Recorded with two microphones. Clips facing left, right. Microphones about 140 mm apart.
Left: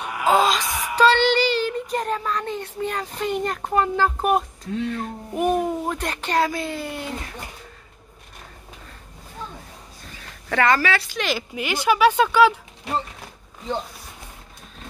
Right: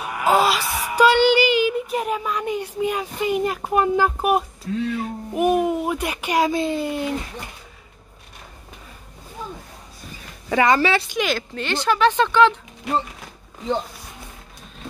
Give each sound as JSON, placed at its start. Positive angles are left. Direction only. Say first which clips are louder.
{"t": 0.0, "sound": "a sound", "louder": "right 1 dB", "side_deg": -5}
{"t": 0.7, "sound": "a sound", "louder": "right 1 dB", "side_deg": -35}
{"t": 0.9, "sound": "child singing", "louder": "right 2 dB", "side_deg": -10}
{"t": 4.9, "sound": "speech", "louder": "right 3 dB", "side_deg": -5}
{"t": 10.5, "sound": "speech", "louder": "right 2 dB", "side_deg": -15}
{"t": 11.2, "sound": "speech", "louder": "right 1 dB", "side_deg": 10}